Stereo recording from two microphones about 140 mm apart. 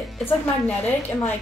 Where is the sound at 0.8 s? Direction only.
15° left (ahead or behind).